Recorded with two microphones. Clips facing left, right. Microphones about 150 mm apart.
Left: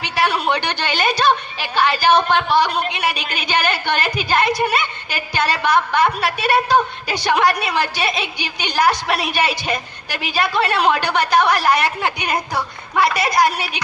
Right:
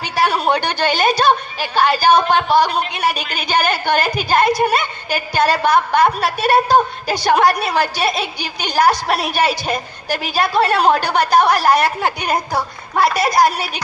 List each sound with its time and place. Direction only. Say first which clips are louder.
0.0 s a woman's voice: right 2 dB; 40° right (ahead or behind)